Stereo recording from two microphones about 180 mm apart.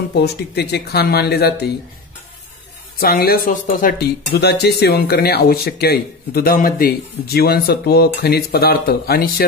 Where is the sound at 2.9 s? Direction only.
55° left (ahead or behind).